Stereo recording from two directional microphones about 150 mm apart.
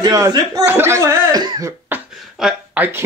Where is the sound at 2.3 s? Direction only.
5° right (ahead or behind).